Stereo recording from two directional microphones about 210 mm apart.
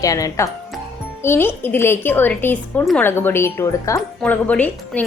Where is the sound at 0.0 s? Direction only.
15° left (ahead or behind).